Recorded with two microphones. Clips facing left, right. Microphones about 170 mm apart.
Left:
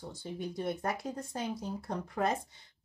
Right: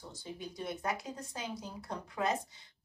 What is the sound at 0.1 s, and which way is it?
Speech, 55° left (ahead or behind).